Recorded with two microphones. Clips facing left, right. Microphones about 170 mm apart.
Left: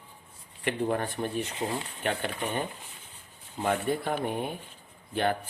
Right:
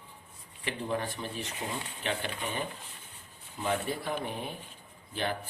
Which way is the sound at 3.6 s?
55° left (ahead or behind).